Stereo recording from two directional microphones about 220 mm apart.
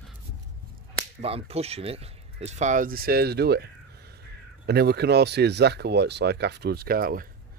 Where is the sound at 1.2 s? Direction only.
25° right (ahead or behind).